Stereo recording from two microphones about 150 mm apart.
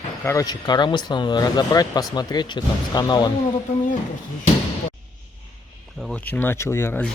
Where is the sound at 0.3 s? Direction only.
25° left (ahead or behind).